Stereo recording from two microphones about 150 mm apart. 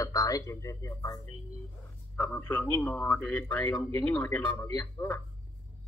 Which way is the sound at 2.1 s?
15° left (ahead or behind).